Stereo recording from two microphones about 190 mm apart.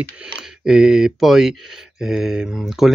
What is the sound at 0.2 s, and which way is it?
Speech, 5° right (ahead or behind).